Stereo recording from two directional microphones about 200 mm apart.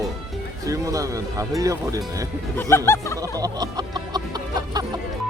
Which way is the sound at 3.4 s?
20° right (ahead or behind).